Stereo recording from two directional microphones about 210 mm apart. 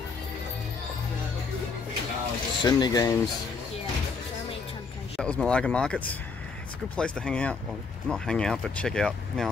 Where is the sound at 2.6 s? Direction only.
20° left (ahead or behind).